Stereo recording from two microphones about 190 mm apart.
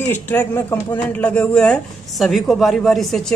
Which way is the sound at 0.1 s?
10° left (ahead or behind).